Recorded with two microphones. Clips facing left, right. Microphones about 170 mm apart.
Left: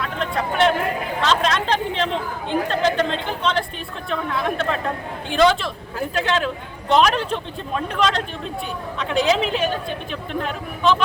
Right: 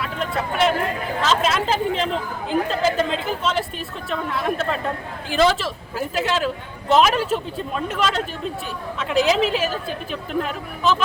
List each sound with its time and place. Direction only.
0.0 s speech: 5° right (ahead or behind)
1.2 s chatter: 5° right (ahead or behind)
2.5 s speech: 5° right (ahead or behind)